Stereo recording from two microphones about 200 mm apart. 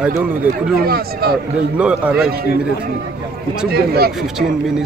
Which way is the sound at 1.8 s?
5° right (ahead or behind).